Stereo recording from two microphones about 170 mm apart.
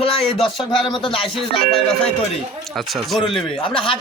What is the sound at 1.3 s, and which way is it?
Speech, centre (ahead or behind).